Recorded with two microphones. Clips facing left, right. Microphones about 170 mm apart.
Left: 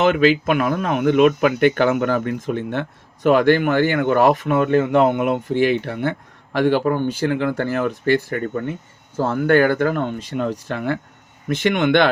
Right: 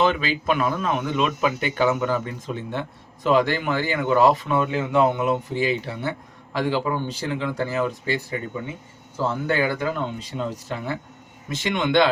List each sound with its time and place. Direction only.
0.1 s speech: 55° left (ahead or behind)